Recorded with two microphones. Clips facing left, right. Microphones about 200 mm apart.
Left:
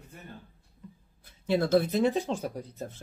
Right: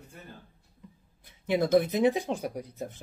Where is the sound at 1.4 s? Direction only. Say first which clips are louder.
Right 1 dB; 15° right (ahead or behind).